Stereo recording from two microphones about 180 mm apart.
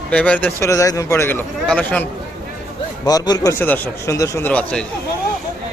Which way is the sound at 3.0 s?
20° left (ahead or behind).